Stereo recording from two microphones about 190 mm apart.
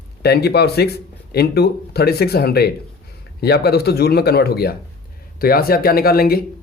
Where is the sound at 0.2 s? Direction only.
55° left (ahead or behind).